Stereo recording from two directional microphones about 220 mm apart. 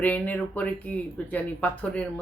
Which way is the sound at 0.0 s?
5° left (ahead or behind).